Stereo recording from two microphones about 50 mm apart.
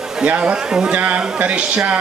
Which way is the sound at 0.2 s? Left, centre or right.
Right.